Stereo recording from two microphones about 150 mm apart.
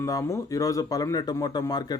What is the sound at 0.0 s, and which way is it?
A man's voice, 20° left (ahead or behind).